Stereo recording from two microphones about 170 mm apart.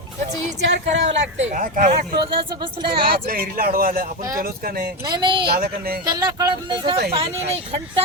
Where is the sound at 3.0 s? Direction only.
60° right (ahead or behind).